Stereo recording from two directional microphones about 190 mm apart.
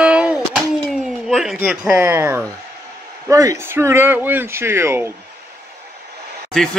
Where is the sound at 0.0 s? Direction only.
5° right (ahead or behind).